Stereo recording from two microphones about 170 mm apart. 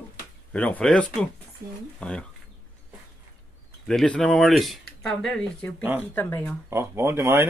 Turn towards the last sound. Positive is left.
turn(degrees=-15)  # may be behind; listen again after turning